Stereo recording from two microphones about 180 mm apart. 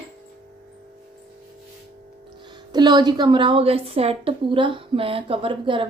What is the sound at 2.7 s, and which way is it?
A woman's voice, 25° right (ahead or behind).